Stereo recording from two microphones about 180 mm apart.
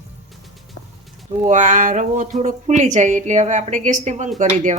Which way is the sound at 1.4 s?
45° right (ahead or behind).